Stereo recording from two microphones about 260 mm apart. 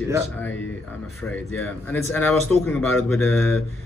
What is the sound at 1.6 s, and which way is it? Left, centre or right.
A man's voice, centre.